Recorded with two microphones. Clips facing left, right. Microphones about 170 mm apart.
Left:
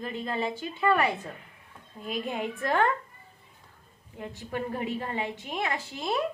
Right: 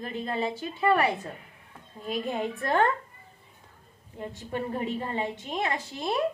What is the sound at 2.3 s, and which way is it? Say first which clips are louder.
Speech: right 1 dB; 40° right (ahead or behind).